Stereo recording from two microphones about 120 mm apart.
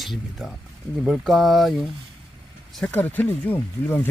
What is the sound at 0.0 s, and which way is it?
Speech, centre (ahead or behind).